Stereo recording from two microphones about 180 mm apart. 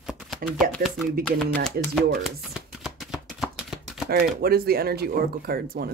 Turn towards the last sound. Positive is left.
turn(degrees=-55)  # may be behind; listen again after turning